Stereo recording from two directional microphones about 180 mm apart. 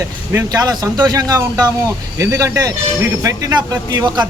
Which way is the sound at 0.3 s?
20° right (ahead or behind).